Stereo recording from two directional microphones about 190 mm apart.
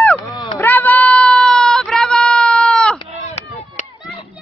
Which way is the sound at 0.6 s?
10° left (ahead or behind).